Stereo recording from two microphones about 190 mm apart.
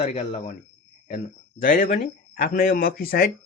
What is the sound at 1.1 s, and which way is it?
Speech, 45° left (ahead or behind).